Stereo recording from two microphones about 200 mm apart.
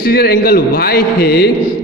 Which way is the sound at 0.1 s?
50° left (ahead or behind).